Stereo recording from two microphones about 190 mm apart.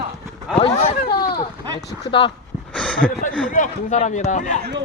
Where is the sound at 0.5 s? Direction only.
30° left (ahead or behind).